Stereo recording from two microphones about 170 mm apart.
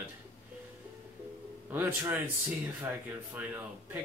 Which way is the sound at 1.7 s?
10° right (ahead or behind).